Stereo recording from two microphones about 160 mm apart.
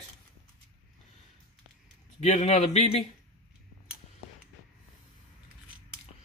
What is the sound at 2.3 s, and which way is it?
Speech, 40° left (ahead or behind).